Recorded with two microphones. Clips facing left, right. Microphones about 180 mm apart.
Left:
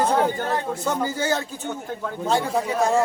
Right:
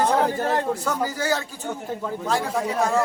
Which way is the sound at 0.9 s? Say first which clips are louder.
Left 1 dB; 25° left (ahead or behind).